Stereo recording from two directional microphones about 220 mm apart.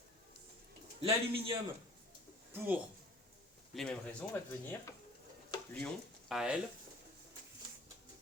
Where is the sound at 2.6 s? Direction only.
5° right (ahead or behind).